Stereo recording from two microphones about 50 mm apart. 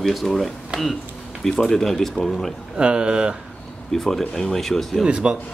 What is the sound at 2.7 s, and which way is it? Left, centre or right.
Speech, centre.